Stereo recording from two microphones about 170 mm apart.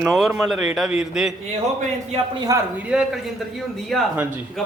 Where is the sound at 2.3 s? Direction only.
20° right (ahead or behind).